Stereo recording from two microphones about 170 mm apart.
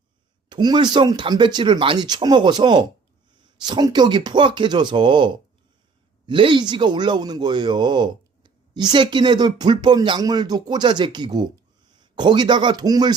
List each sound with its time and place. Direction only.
0.4 s speech: 25° right (ahead or behind)